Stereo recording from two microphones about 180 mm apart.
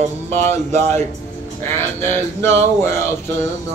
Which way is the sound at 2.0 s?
15° left (ahead or behind).